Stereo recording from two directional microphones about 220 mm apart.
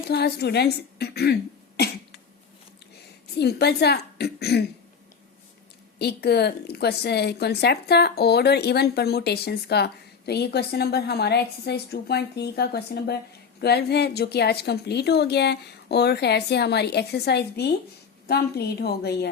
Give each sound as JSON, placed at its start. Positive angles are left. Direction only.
{"t": 0.1, "sound": "speech", "side_deg": 45}
{"t": 3.3, "sound": "a woman's voice", "side_deg": 45}
{"t": 6.0, "sound": "a woman's voice", "side_deg": 50}